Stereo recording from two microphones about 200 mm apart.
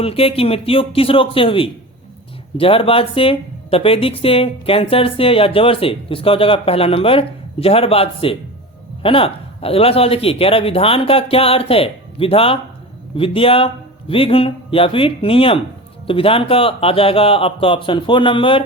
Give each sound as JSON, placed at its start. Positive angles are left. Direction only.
{"t": 0.0, "sound": "speech", "side_deg": 30}